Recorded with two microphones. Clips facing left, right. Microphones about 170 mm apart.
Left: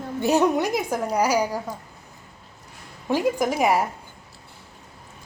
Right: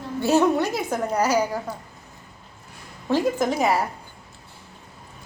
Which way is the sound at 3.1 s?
10° left (ahead or behind).